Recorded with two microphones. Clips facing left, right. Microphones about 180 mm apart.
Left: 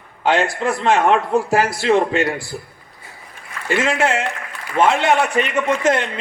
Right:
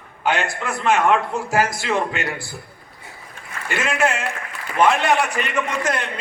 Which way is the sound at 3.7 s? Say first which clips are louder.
Left 3 dB; 30° left (ahead or behind).